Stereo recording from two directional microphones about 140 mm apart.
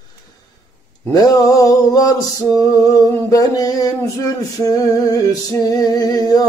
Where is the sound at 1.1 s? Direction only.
25° left (ahead or behind).